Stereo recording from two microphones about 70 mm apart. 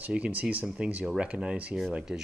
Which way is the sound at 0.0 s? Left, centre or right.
Centre.